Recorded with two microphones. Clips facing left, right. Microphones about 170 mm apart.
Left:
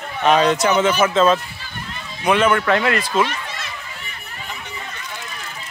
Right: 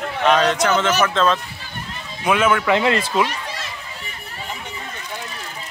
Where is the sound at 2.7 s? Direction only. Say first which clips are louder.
Right 1 dB; 25° right (ahead or behind).